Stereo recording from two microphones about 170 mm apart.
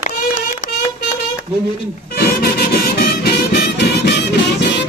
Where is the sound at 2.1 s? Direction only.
65° left (ahead or behind).